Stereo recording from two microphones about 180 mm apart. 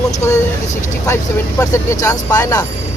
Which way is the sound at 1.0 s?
15° left (ahead or behind).